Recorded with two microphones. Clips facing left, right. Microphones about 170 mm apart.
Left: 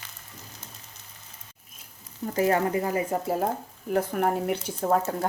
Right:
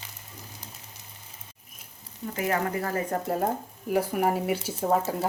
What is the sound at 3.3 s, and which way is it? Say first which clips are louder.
A woman's voice: even; centre (ahead or behind).